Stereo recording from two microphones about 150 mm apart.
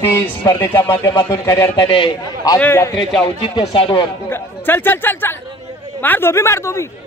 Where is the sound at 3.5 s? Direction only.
35° left (ahead or behind).